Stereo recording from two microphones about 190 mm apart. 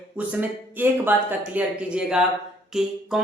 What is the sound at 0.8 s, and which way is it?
Speech, 10° right (ahead or behind).